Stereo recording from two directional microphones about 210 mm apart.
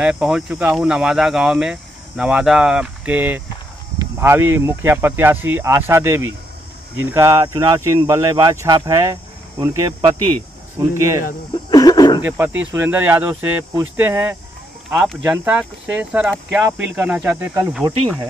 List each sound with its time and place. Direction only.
0.0 s speech: 5° right (ahead or behind)
11.7 s a sound: 20° left (ahead or behind)
12.7 s speech: 10° right (ahead or behind)